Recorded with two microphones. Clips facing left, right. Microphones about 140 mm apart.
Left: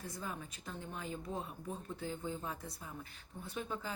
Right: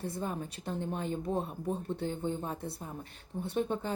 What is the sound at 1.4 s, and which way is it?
Speech, 30° right (ahead or behind).